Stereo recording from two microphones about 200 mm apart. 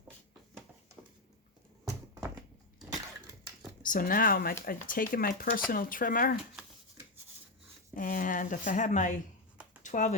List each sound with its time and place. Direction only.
3.8 s speech: 45° left (ahead or behind)
7.9 s speech: 40° left (ahead or behind)